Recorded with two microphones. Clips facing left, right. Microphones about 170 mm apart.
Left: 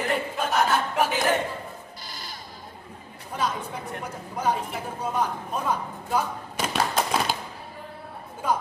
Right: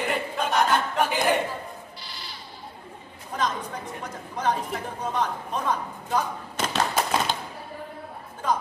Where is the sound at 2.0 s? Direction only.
45° left (ahead or behind).